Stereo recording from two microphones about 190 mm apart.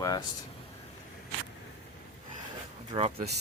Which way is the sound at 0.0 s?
20° left (ahead or behind).